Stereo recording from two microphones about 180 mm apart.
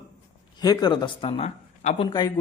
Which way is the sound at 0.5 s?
20° left (ahead or behind).